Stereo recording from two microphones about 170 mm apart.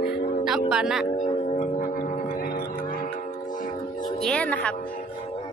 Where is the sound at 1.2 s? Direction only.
50° left (ahead or behind).